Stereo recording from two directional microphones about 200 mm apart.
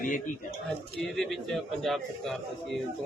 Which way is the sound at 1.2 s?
Centre (ahead or behind).